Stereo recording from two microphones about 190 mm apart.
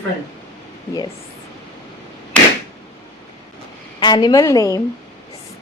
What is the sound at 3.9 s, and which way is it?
Speech, 25° left (ahead or behind).